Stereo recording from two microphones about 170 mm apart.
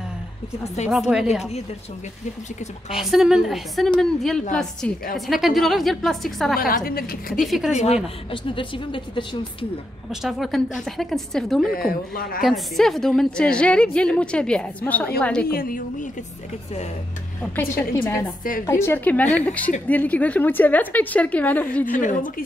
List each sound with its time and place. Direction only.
0.8 s a woman's voice: 5° right (ahead or behind)
2.9 s a woman's voice: centre (ahead or behind)
6.6 s a woman's voice: 60° left (ahead or behind)
7.3 s a woman's voice: centre (ahead or behind)
7.7 s a woman's voice: 40° left (ahead or behind)
10.2 s a woman's voice: centre (ahead or behind)
11.7 s a woman's voice: 60° left (ahead or behind)
12.4 s a woman's voice: centre (ahead or behind)
15.5 s a woman's voice: 55° left (ahead or behind)
17.4 s a woman's voice: 10° left (ahead or behind)